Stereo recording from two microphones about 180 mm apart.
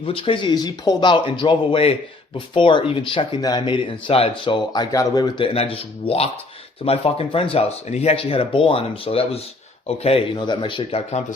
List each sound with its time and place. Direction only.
0.0 s speech: 30° left (ahead or behind)